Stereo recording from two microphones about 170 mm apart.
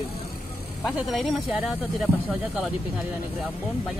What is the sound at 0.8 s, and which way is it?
Speech, centre (ahead or behind).